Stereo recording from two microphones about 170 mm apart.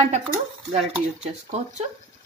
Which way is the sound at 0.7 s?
40° right (ahead or behind).